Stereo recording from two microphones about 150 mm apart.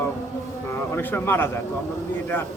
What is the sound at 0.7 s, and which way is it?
Speech, 15° left (ahead or behind).